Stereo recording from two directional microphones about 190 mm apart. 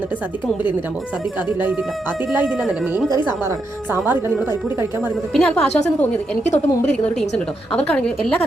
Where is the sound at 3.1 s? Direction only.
20° left (ahead or behind).